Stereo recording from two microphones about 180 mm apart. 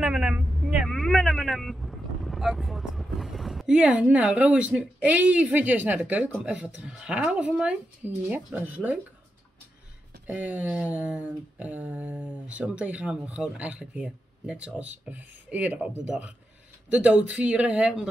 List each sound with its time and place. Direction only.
0.0 s speech: 5° right (ahead or behind)
10.2 s speech: 10° right (ahead or behind)